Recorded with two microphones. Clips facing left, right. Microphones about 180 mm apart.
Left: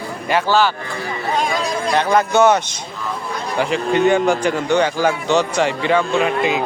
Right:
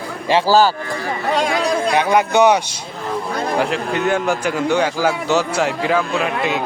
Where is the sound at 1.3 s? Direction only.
70° right (ahead or behind).